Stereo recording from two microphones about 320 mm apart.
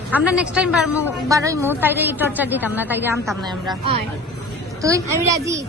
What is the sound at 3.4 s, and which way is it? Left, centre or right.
Speech, centre.